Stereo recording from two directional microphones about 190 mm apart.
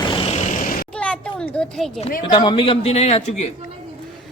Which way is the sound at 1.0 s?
5° left (ahead or behind).